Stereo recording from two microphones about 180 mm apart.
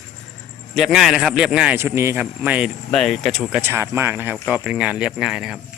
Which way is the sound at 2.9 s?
5° left (ahead or behind).